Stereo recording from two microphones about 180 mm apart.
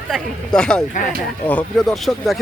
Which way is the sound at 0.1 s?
5° left (ahead or behind).